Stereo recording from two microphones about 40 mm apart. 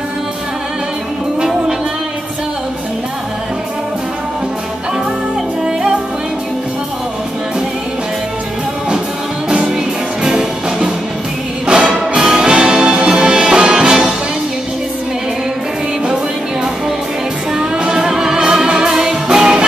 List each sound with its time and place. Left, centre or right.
1.4 s music: centre
10.2 s music: centre
17.6 s music: centre